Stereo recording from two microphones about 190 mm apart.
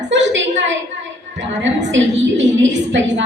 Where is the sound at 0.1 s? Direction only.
75° right (ahead or behind).